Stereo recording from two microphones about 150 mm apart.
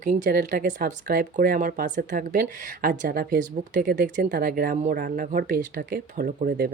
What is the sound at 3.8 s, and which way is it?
Speech, 70° right (ahead or behind).